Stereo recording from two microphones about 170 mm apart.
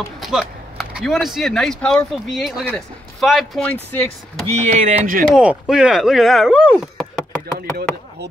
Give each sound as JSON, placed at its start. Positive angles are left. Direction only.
{"t": 0.2, "sound": "speech", "side_deg": 0}
{"t": 3.9, "sound": "speech", "side_deg": 10}
{"t": 4.8, "sound": "speech", "side_deg": -50}
{"t": 5.3, "sound": "speech", "side_deg": -5}
{"t": 6.8, "sound": "knock", "side_deg": 0}